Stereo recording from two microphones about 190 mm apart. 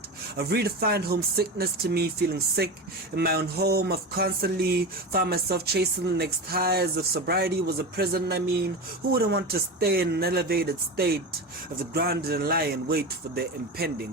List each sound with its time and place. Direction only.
0.3 s speech: 55° right (ahead or behind)